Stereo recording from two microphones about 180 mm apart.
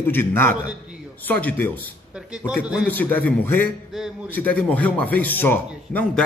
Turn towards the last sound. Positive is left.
turn(degrees=10)  # may be behind; listen again after turning